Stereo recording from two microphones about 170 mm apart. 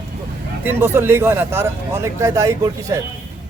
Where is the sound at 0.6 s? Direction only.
15° right (ahead or behind).